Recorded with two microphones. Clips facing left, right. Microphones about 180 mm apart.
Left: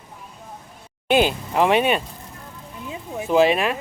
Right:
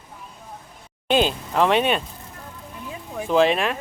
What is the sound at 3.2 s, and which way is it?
Speech, 10° left (ahead or behind).